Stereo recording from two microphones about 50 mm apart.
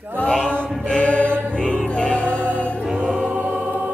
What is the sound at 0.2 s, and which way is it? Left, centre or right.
Chant, centre.